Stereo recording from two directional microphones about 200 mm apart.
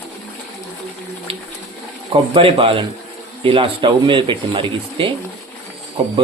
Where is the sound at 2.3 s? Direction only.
25° right (ahead or behind).